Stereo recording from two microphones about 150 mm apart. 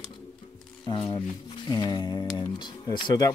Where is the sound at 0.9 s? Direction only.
30° left (ahead or behind).